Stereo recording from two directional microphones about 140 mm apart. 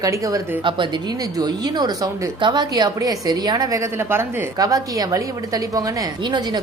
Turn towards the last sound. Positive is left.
turn(degrees=-30)  # may be behind; listen again after turning